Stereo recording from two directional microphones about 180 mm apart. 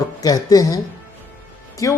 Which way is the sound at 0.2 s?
20° left (ahead or behind).